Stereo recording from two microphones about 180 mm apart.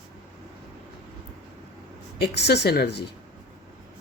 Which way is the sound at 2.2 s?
65° left (ahead or behind).